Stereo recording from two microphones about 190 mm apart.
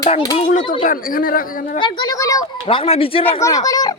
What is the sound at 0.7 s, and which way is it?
Speech, 45° left (ahead or behind).